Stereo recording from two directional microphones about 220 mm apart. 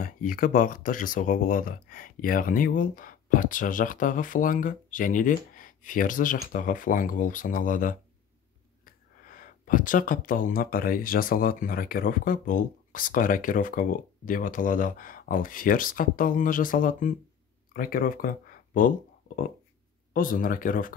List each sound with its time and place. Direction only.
0.0 s speech: 40° left (ahead or behind)